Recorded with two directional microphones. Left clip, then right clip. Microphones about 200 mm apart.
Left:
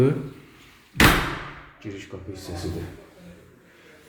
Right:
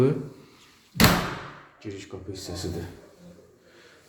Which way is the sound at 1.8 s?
Centre (ahead or behind).